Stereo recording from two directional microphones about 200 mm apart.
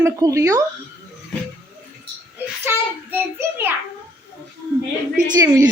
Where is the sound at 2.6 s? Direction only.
10° right (ahead or behind).